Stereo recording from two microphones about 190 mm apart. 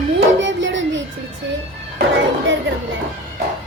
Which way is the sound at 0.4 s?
75° right (ahead or behind).